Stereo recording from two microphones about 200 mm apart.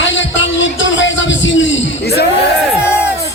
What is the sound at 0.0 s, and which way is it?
Music, 65° left (ahead or behind).